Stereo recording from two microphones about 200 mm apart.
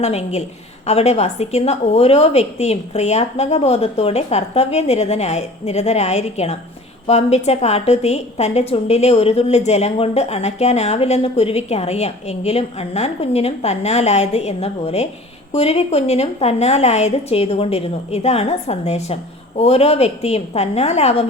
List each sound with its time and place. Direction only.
0.0 s a woman's voice: 30° left (ahead or behind)